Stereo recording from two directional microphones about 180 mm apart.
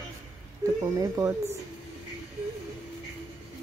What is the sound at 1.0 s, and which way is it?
Speech, 15° right (ahead or behind).